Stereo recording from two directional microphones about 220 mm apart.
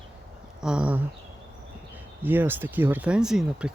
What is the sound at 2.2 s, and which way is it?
Speech, 10° right (ahead or behind).